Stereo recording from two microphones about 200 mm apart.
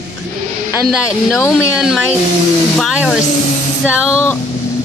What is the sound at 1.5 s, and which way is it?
Speech, centre (ahead or behind).